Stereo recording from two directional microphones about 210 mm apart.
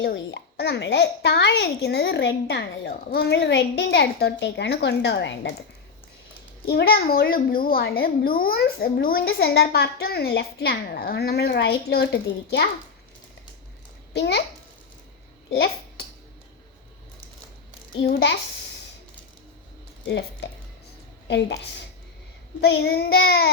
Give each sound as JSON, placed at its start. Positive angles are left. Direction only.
{"t": 0.0, "sound": "a child's voice", "side_deg": 60}
{"t": 6.7, "sound": "a child's voice", "side_deg": 50}
{"t": 14.1, "sound": "a child's voice", "side_deg": 55}
{"t": 15.5, "sound": "babbling", "side_deg": 50}
{"t": 18.0, "sound": "a child's voice", "side_deg": 50}
{"t": 20.1, "sound": "a woman's voice", "side_deg": 55}
{"t": 22.6, "sound": "a child's voice", "side_deg": 50}